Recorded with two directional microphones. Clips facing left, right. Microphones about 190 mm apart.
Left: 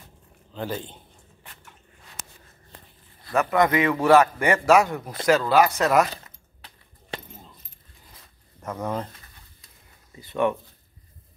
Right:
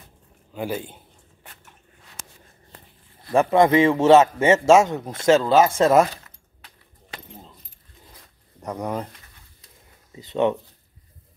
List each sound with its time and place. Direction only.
0.5 s speech: 10° right (ahead or behind)
3.3 s a man's voice: 25° right (ahead or behind)
8.5 s speech: 15° right (ahead or behind)
10.1 s a man's voice: 20° right (ahead or behind)